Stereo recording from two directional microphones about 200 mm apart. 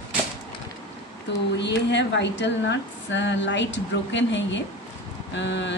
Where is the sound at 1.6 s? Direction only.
60° left (ahead or behind).